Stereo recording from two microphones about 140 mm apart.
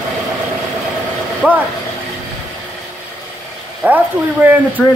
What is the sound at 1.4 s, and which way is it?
Speech, 10° right (ahead or behind).